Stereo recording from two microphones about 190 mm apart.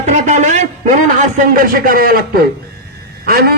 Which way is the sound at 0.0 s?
40° right (ahead or behind).